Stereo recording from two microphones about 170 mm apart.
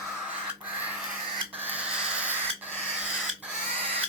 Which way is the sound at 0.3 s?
10° right (ahead or behind).